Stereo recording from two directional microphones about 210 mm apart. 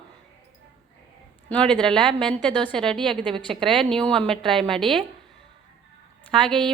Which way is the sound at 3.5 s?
Centre (ahead or behind).